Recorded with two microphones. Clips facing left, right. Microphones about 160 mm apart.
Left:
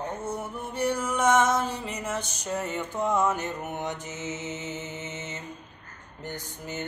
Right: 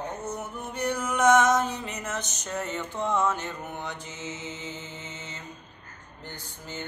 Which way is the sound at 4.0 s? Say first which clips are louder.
Left 3 dB; 45° left (ahead or behind).